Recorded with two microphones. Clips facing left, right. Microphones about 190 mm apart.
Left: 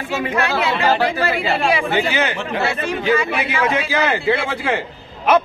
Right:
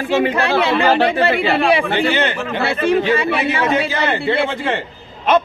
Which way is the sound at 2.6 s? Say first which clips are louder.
Right 6 dB; 30° right (ahead or behind).